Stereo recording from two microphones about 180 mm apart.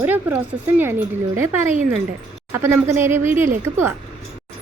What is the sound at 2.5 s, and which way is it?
Speech, 15° right (ahead or behind).